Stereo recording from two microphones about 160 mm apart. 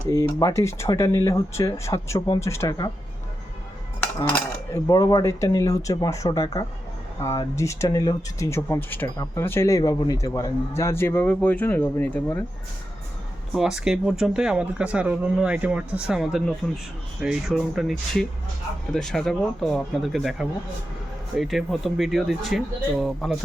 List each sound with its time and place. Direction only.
0.1 s a man's voice: 20° left (ahead or behind)
4.2 s a man's voice: 15° left (ahead or behind)
13.5 s speech: 5° right (ahead or behind)